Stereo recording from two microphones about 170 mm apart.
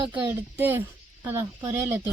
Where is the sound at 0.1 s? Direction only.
10° right (ahead or behind).